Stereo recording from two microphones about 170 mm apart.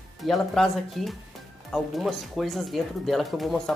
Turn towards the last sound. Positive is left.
turn(degrees=0)  # may be behind; listen again after turning